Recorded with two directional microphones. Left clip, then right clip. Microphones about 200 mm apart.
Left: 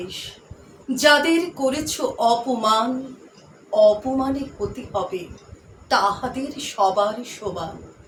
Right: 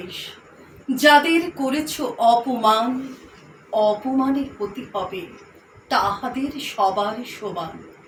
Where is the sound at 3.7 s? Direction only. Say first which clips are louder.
Left 3 dB; 15° left (ahead or behind).